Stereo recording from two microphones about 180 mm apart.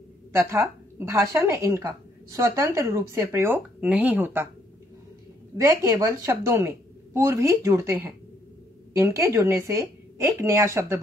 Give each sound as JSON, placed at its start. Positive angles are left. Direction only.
{"t": 0.3, "sound": "a woman's voice", "side_deg": -15}
{"t": 5.6, "sound": "a woman's voice", "side_deg": -15}